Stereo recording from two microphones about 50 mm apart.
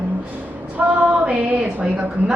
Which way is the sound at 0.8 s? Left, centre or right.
Right.